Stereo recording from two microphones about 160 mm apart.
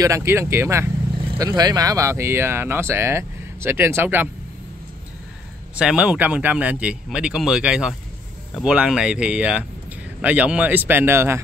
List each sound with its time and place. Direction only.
0.0 s speech: 15° right (ahead or behind)
5.8 s speech: 5° right (ahead or behind)